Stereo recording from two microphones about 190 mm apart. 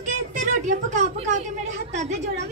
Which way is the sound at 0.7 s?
35° right (ahead or behind).